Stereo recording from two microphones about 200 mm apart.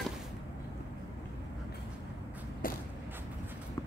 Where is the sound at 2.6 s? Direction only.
45° left (ahead or behind).